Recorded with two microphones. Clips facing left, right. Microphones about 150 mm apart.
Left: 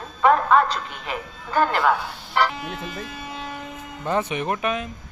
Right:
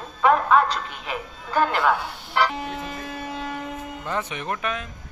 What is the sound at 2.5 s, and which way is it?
Speech, 40° right (ahead or behind).